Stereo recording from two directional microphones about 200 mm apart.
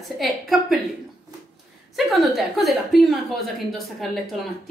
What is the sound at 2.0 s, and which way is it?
A woman's voice, centre (ahead or behind).